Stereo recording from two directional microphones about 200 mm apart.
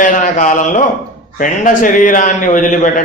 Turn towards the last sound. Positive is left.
turn(degrees=40)  # may be behind; listen again after turning